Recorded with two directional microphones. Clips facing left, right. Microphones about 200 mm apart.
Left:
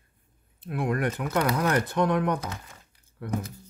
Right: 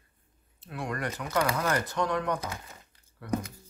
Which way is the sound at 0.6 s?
55° left (ahead or behind).